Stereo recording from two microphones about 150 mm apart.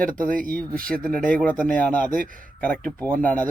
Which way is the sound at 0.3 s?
65° right (ahead or behind).